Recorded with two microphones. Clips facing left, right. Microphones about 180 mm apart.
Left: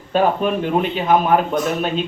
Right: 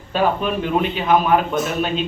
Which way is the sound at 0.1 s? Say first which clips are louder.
Left 2 dB; 45° left (ahead or behind).